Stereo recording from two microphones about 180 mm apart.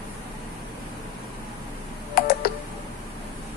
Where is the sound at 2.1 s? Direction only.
55° left (ahead or behind).